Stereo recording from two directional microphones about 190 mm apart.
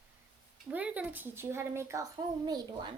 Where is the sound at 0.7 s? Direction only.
5° right (ahead or behind).